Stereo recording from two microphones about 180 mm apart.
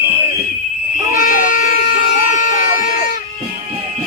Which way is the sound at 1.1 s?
50° left (ahead or behind).